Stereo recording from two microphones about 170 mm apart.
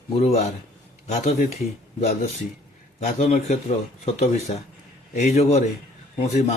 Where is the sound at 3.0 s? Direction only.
40° left (ahead or behind).